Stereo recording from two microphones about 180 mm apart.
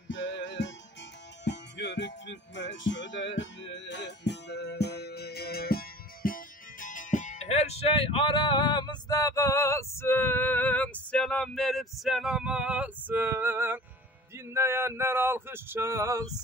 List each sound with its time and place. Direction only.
0.1 s music: 90° left
1.4 s music: 75° left (ahead or behind); by 13.7 s 10° right (ahead or behind)
14.5 s male singing: 15° right (ahead or behind)